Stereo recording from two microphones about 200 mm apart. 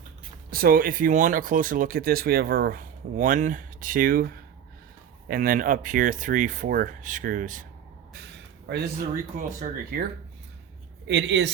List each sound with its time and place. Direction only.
0.5 s speech: 45° right (ahead or behind)
5.3 s speech: 45° right (ahead or behind)
8.7 s speech: 60° right (ahead or behind)
9.3 s speech: 45° right (ahead or behind)
11.0 s speech: 65° right (ahead or behind)